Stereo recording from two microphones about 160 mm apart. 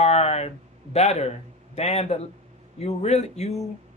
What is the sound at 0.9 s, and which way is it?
A man's voice, 40° left (ahead or behind).